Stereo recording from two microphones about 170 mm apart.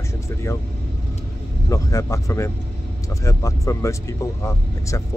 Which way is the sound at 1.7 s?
15° left (ahead or behind).